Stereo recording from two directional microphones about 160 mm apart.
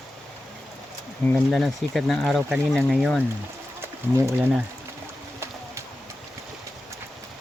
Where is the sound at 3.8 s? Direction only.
15° right (ahead or behind).